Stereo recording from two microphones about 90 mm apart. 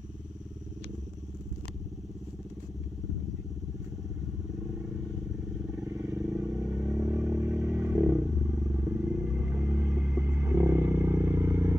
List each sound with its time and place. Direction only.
6.2 s vehicle: 15° right (ahead or behind)